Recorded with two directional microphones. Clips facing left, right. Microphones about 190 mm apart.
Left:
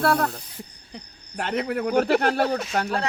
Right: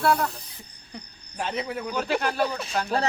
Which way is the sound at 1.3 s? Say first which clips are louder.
Left 4 dB; 60° left (ahead or behind).